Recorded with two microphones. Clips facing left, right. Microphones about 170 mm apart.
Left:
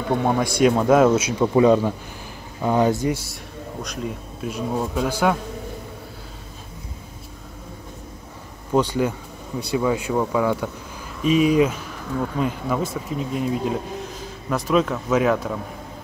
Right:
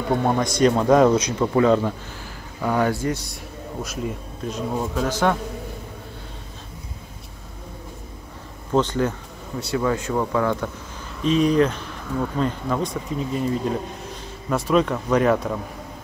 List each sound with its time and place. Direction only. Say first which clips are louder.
0.2 s speech: left 1 dB; 5° left (ahead or behind)
3.8 s speech: right 1 dB; 5° right (ahead or behind)
4.4 s speech: left 1 dB; 10° left (ahead or behind)
8.7 s speech: left 1 dB; 10° left (ahead or behind)